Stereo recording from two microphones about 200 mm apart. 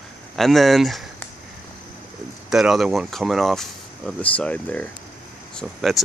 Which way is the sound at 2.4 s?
Centre (ahead or behind).